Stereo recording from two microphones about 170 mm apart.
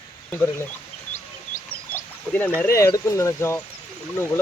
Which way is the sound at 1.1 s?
50° left (ahead or behind).